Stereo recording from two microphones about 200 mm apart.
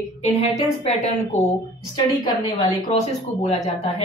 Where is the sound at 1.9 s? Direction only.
25° left (ahead or behind).